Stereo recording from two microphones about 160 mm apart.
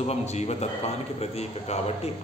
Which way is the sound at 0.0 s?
45° left (ahead or behind).